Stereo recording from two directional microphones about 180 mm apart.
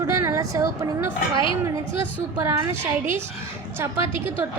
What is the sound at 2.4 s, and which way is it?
Speech, 15° right (ahead or behind).